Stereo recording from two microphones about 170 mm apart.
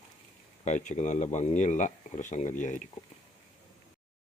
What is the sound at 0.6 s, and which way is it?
Speech, 45° left (ahead or behind).